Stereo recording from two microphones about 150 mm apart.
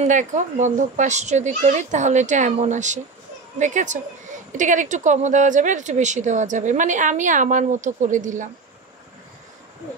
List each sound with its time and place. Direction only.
0.0 s speech: 55° right (ahead or behind)